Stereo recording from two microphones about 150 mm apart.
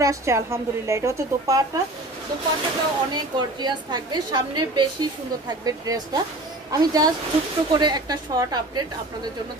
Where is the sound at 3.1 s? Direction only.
30° right (ahead or behind).